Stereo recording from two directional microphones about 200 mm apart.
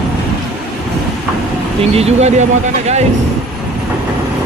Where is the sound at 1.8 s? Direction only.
30° right (ahead or behind).